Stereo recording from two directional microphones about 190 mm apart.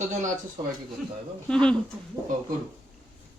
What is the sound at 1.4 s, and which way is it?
Speech, 5° left (ahead or behind).